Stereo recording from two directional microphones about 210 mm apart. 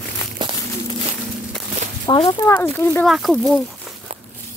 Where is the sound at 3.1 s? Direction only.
Centre (ahead or behind).